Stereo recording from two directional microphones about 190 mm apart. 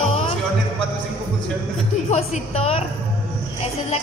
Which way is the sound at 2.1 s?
35° left (ahead or behind).